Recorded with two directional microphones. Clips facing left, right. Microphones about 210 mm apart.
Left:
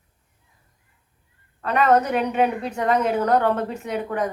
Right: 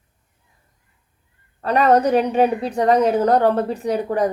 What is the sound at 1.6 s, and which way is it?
Speech, 35° right (ahead or behind).